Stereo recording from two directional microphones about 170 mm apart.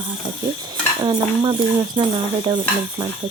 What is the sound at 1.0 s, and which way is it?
Cricket, 30° right (ahead or behind).